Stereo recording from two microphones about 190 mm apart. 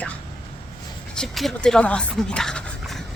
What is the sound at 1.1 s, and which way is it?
Speech, centre (ahead or behind).